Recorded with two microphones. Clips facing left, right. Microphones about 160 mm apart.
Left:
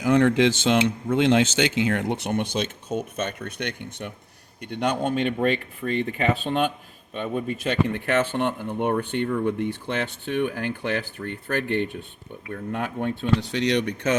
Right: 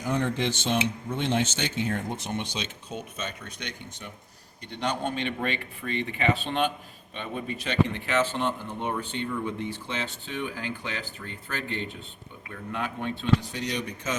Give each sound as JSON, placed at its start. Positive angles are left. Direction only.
{"t": 0.0, "sound": "speech", "side_deg": 90}
{"t": 13.4, "sound": "speech", "side_deg": 75}